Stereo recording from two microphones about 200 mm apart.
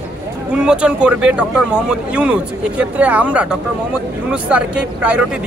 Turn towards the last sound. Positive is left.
turn(degrees=-5)  # may be behind; listen again after turning